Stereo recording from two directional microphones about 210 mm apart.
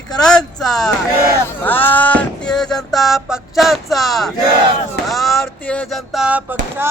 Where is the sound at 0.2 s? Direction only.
5° left (ahead or behind).